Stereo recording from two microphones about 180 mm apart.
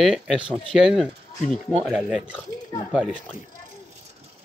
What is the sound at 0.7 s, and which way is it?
Speech, centre (ahead or behind).